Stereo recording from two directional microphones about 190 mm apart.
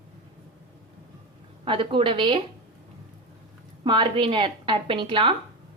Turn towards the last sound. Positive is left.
turn(degrees=-25)  # may be behind; listen again after turning